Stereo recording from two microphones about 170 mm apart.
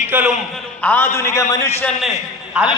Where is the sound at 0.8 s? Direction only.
10° left (ahead or behind).